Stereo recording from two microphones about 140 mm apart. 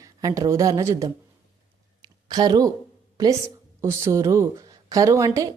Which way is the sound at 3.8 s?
20° right (ahead or behind).